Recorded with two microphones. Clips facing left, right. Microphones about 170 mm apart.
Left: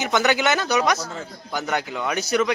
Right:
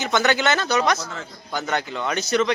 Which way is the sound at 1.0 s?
35° left (ahead or behind).